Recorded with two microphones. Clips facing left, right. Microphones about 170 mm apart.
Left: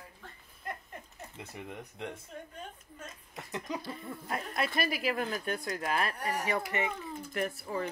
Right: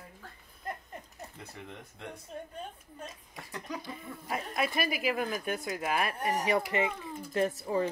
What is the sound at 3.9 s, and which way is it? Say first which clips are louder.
Speech: even; 5° right (ahead or behind).